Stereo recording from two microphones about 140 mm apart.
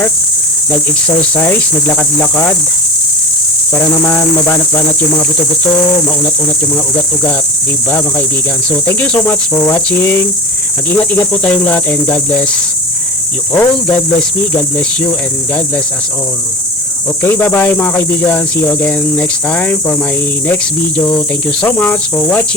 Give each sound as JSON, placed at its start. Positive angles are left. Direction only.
{"t": 1.2, "sound": "cricket", "side_deg": 15}
{"t": 4.1, "sound": "cricket", "side_deg": 15}
{"t": 8.9, "sound": "cricket", "side_deg": 15}
{"t": 13.5, "sound": "cricket", "side_deg": 15}
{"t": 17.2, "sound": "cricket", "side_deg": 15}